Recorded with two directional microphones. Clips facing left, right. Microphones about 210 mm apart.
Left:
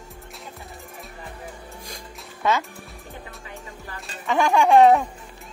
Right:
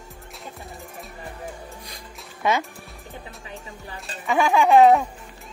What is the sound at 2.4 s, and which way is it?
Speech, 15° right (ahead or behind).